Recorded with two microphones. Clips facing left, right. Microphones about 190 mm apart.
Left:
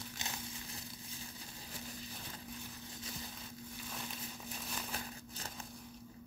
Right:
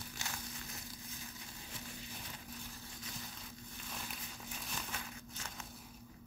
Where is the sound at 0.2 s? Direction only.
20° left (ahead or behind).